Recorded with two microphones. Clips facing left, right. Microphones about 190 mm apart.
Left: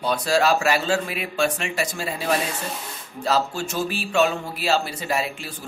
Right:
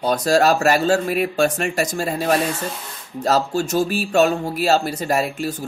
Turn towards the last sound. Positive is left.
turn(degrees=-45)  # may be behind; listen again after turning